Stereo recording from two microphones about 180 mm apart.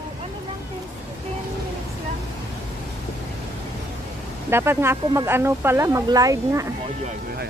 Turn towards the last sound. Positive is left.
turn(degrees=-15)  # may be behind; listen again after turning